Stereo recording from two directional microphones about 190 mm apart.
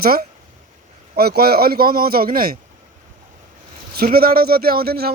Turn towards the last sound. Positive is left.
turn(degrees=-55)  # may be behind; listen again after turning